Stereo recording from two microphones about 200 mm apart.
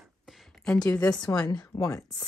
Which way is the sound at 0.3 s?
5° left (ahead or behind).